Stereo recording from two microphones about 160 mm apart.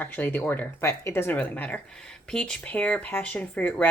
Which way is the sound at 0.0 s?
10° left (ahead or behind).